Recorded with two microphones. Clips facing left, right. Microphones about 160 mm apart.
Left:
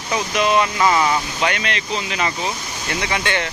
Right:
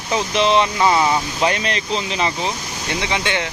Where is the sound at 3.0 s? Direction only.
15° right (ahead or behind).